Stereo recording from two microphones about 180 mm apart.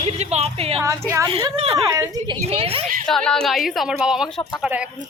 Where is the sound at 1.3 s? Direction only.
35° right (ahead or behind).